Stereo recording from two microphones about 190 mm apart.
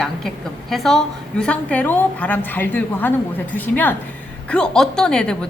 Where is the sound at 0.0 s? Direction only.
Centre (ahead or behind).